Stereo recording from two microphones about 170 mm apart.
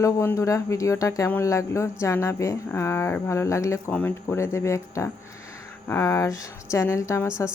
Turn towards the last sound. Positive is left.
turn(degrees=15)  # may be behind; listen again after turning